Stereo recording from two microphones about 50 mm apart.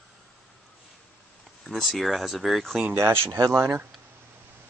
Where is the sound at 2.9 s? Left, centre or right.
Right.